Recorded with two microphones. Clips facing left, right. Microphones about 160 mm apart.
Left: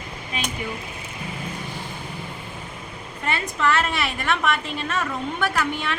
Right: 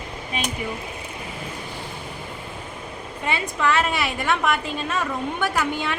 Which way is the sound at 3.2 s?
15° right (ahead or behind).